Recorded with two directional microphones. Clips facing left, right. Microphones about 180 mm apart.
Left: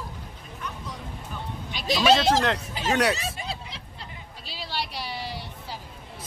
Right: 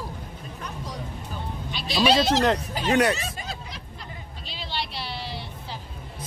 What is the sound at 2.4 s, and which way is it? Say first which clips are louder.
Speech: right 4 dB; 40° right (ahead or behind).